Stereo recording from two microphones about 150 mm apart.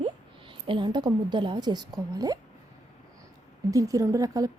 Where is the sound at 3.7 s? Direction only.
25° right (ahead or behind).